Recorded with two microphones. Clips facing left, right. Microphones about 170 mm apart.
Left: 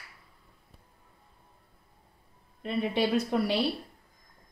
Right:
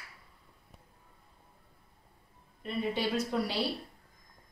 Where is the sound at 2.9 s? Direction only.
65° left (ahead or behind).